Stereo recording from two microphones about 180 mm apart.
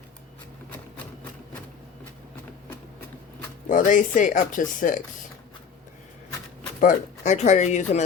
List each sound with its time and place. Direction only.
3.7 s speech: 45° left (ahead or behind)
6.7 s speech: 45° left (ahead or behind)